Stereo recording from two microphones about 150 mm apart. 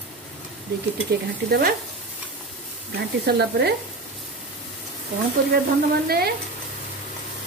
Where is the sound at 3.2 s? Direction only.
90° right.